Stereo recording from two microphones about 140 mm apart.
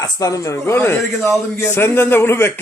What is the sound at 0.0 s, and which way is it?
Speech, 25° left (ahead or behind).